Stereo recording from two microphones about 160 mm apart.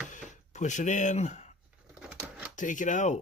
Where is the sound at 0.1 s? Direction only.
50° left (ahead or behind).